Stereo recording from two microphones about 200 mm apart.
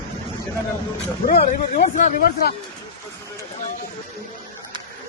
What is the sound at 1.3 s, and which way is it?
Speech, 40° left (ahead or behind).